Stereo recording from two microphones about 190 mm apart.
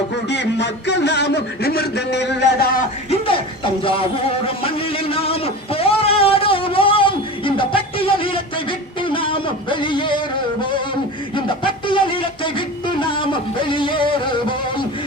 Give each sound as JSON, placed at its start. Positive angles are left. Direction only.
{"t": 0.3, "sound": "a man's voice", "side_deg": 65}
{"t": 3.8, "sound": "a sound", "side_deg": 30}
{"t": 11.3, "sound": "music", "side_deg": 25}